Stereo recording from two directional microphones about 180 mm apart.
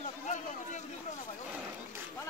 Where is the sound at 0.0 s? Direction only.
40° left (ahead or behind).